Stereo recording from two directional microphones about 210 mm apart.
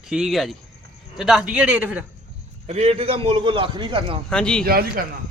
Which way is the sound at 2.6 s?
30° right (ahead or behind).